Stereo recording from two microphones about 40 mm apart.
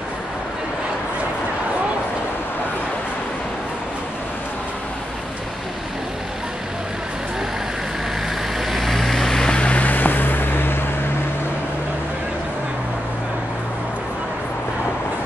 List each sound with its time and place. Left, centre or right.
8.5 s vehicle: centre
9.5 s vehicle: left
9.8 s vehicle: left